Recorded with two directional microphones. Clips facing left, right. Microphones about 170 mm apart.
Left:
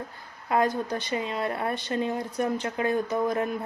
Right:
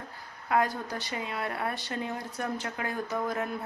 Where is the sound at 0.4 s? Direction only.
25° left (ahead or behind).